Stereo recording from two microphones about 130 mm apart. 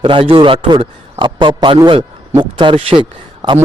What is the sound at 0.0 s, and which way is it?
A man's voice, 45° right (ahead or behind).